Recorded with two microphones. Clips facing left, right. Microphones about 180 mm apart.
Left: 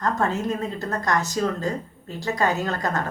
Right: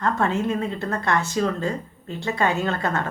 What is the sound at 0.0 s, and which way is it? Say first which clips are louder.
A woman's voice: right 1 dB; 40° left (ahead or behind).